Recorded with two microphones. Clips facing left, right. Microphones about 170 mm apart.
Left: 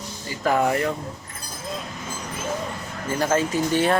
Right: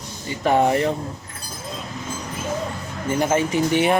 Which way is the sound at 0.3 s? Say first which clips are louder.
Right 3 dB; 25° right (ahead or behind).